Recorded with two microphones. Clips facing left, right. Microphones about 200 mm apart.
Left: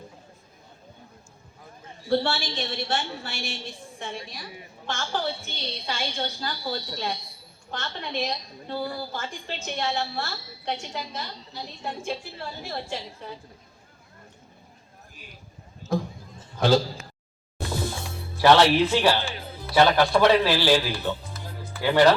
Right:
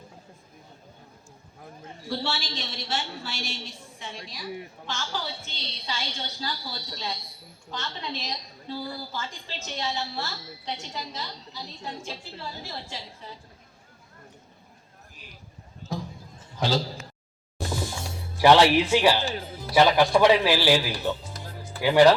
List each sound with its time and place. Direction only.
2.0 s a woman's voice: 55° left (ahead or behind)
16.6 s a man's voice: 55° left (ahead or behind)
18.3 s a man's voice: 15° right (ahead or behind)